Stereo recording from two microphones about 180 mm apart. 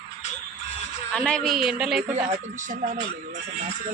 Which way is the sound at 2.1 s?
45° right (ahead or behind).